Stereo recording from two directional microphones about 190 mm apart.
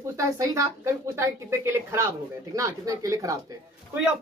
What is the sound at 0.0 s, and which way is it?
Speech, 15° right (ahead or behind).